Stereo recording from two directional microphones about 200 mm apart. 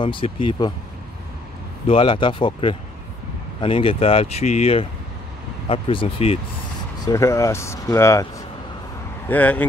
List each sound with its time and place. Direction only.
0.0 s speech: 25° left (ahead or behind)
1.9 s speech: 25° left (ahead or behind)
7.1 s speech: 15° left (ahead or behind)
9.3 s speech: 10° left (ahead or behind)